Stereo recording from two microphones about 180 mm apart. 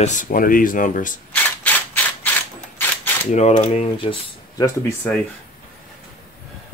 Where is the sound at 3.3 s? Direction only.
40° left (ahead or behind).